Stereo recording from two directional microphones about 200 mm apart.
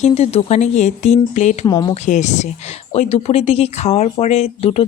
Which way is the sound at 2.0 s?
35° left (ahead or behind).